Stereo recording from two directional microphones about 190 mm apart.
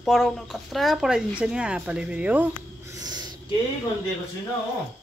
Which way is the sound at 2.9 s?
20° right (ahead or behind).